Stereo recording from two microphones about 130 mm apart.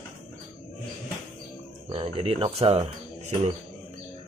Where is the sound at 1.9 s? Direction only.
45° right (ahead or behind).